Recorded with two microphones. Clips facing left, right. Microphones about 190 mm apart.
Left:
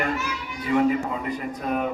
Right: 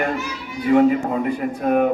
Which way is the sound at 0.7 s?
55° right (ahead or behind).